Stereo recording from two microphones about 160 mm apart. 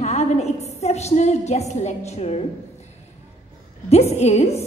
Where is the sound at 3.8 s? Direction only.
40° left (ahead or behind).